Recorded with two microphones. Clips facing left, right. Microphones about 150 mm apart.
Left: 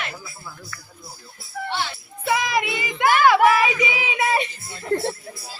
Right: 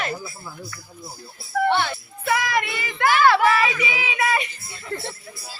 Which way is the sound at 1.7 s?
60° right (ahead or behind).